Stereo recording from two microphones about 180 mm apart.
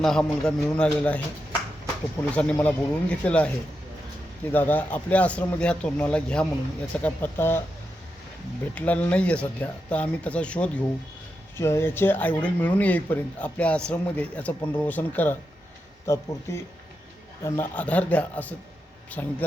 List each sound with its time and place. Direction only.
0.0 s a man's voice: 5° left (ahead or behind)
2.3 s speech: 5° left (ahead or behind)
4.5 s speech: 10° left (ahead or behind)
8.7 s speech: 10° left (ahead or behind)